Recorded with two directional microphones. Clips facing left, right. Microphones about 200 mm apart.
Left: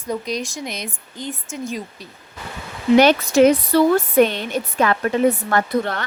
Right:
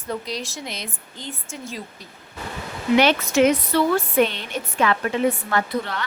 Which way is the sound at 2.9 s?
40° left (ahead or behind).